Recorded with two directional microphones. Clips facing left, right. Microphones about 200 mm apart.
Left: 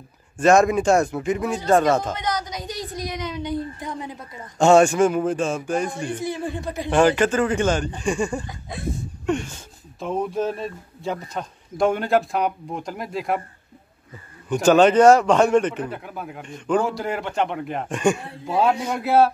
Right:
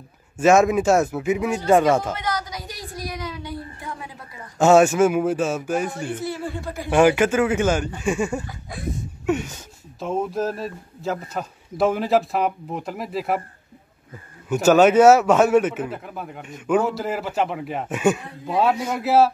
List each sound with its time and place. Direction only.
0.4 s speech: 5° right (ahead or behind)
2.1 s a sound: 20° left (ahead or behind)
4.6 s speech: 5° right (ahead or behind)
6.1 s speech: 15° left (ahead or behind)
6.9 s speech: 10° right (ahead or behind)
8.5 s speech: 25° left (ahead or behind)
9.2 s speech: 5° right (ahead or behind)
14.5 s speech: 5° right (ahead or behind)